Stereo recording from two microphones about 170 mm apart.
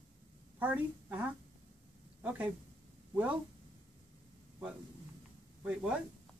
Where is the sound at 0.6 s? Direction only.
10° right (ahead or behind).